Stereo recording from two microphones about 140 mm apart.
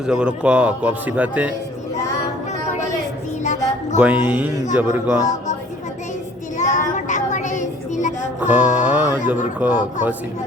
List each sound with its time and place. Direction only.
0.0 s speech: 5° right (ahead or behind)
3.9 s speech: 10° right (ahead or behind)
6.6 s child singing: 60° left (ahead or behind)
8.4 s speech: 10° right (ahead or behind)